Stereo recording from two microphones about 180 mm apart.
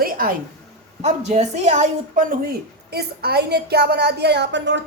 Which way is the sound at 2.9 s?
60° right (ahead or behind).